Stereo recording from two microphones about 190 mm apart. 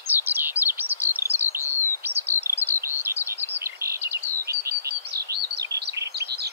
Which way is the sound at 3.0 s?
10° right (ahead or behind).